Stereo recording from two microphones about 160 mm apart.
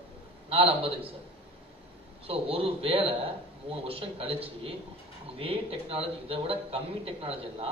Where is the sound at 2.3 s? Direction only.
35° right (ahead or behind).